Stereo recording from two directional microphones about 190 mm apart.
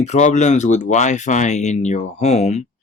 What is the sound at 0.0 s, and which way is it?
Speech, 40° left (ahead or behind).